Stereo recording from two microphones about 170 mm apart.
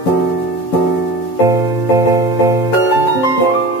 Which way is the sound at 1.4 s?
20° right (ahead or behind).